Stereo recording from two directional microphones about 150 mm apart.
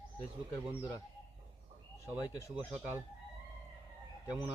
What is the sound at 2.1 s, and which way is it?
Speech, 10° right (ahead or behind).